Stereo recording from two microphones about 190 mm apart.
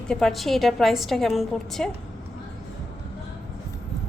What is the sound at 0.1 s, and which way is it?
A woman's voice, centre (ahead or behind).